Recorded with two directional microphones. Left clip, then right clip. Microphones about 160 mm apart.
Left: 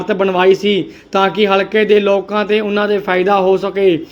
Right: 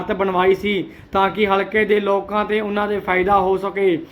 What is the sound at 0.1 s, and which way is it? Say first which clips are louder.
Speech: left 5 dB; 40° left (ahead or behind).